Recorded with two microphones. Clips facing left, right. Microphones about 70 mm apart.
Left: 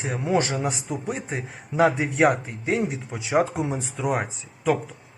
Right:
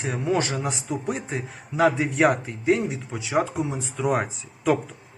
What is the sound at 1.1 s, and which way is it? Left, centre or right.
Speech, left.